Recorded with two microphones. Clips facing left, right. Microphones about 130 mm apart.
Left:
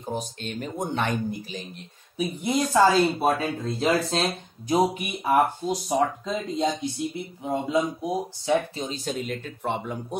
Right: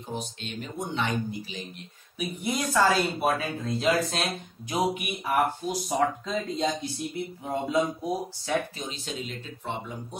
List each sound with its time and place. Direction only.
0.1 s speech: 45° left (ahead or behind)
2.1 s speech: 30° left (ahead or behind)
5.9 s speech: 15° left (ahead or behind)
9.0 s speech: 55° left (ahead or behind)